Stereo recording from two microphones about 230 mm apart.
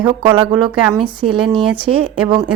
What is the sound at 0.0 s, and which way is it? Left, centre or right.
A woman's voice, right.